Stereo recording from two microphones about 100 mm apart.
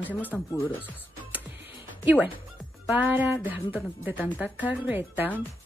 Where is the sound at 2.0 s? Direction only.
15° right (ahead or behind).